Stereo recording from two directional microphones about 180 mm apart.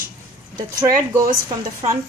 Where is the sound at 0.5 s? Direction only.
15° right (ahead or behind).